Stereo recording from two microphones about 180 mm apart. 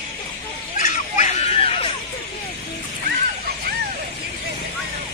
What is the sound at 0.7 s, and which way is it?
Fowl, 45° left (ahead or behind).